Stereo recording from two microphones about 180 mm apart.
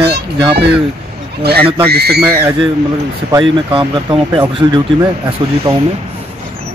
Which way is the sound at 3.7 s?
30° right (ahead or behind).